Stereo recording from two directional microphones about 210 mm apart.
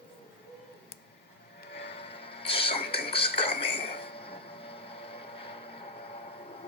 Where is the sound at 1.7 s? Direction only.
55° left (ahead or behind).